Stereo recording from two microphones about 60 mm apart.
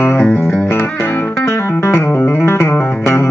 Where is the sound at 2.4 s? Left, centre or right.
Left.